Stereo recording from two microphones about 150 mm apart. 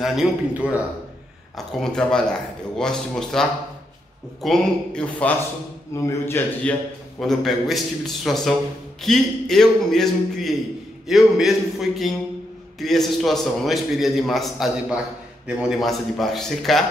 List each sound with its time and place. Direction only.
0.0 s a man's voice: centre (ahead or behind)
5.9 s a man's voice: 15° left (ahead or behind)
7.2 s a man's voice: centre (ahead or behind)